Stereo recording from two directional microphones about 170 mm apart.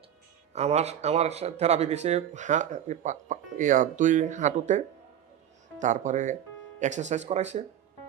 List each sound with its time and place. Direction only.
0.5 s speech: 40° right (ahead or behind)
5.8 s speech: 45° right (ahead or behind)